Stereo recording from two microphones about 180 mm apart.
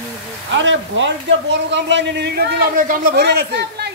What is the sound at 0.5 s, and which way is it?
A man's voice, 90° right.